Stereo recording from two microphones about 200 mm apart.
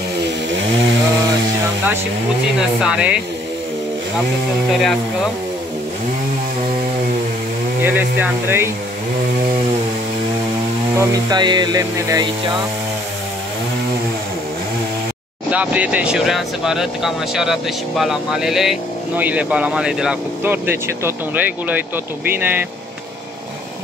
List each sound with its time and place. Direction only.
2.8 s speech: 5° right (ahead or behind)
4.7 s speech: centre (ahead or behind)
7.8 s speech: 10° right (ahead or behind)
11.0 s speech: 20° right (ahead or behind)
15.5 s speech: 5° right (ahead or behind)